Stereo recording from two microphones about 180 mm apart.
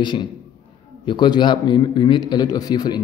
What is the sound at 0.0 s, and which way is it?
Speech, 25° left (ahead or behind).